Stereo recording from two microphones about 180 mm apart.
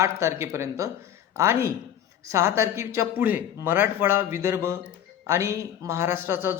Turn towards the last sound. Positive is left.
turn(degrees=-15)  # may be behind; listen again after turning